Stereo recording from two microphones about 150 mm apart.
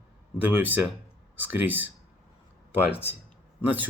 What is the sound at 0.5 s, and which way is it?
Speech, 10° right (ahead or behind).